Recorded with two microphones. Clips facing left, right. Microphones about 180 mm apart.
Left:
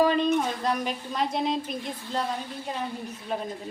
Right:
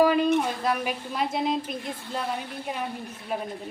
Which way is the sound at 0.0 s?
10° right (ahead or behind).